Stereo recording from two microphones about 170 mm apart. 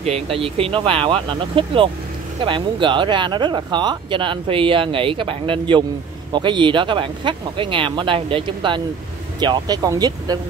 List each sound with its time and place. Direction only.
0.0 s speech: 35° right (ahead or behind)